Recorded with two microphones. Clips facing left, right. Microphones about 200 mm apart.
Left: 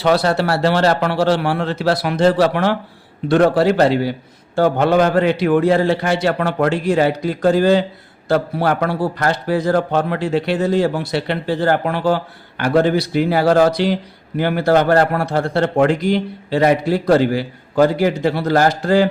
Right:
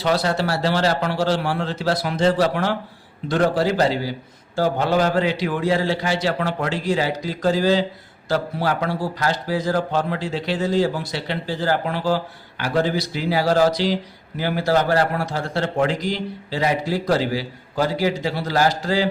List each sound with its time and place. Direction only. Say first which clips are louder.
0.0 s a man's voice: left 5 dB; 65° left (ahead or behind)